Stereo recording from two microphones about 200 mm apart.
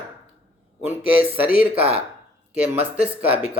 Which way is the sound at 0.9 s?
10° right (ahead or behind).